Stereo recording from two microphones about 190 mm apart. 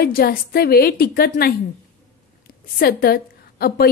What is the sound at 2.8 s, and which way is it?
A woman's voice, 50° left (ahead or behind).